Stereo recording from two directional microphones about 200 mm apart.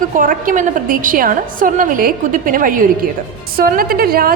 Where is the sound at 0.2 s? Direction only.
40° right (ahead or behind).